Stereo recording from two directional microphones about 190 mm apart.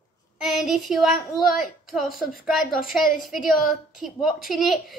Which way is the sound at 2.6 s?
50° left (ahead or behind).